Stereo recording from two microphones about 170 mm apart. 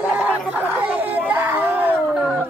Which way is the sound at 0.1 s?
10° right (ahead or behind).